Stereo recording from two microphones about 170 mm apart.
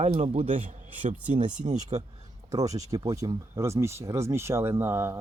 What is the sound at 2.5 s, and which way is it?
Speech, 20° right (ahead or behind).